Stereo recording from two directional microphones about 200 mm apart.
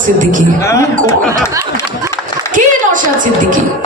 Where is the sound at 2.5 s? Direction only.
40° right (ahead or behind).